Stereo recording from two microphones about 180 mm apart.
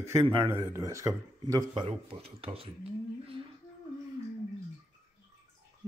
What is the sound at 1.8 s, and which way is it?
Speech, 30° right (ahead or behind).